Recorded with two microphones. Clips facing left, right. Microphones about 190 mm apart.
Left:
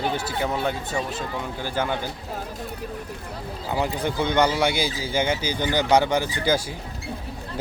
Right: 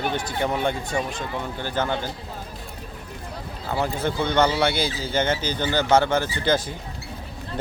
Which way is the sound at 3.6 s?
15° left (ahead or behind).